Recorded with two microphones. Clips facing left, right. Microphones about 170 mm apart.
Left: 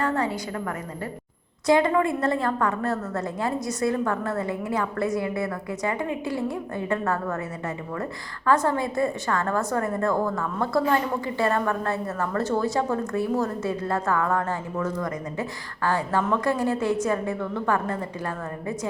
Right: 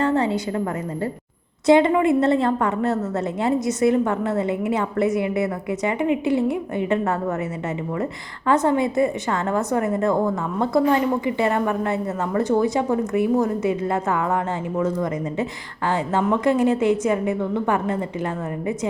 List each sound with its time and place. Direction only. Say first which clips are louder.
0.0 s a sound: right 5 dB; 25° right (ahead or behind)
1.6 s a woman's voice: right 5 dB; 25° right (ahead or behind)
8.4 s a woman's voice: right 4 dB; 20° right (ahead or behind)